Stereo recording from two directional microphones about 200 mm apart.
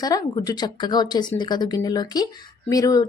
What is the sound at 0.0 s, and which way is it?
Speech, 20° left (ahead or behind).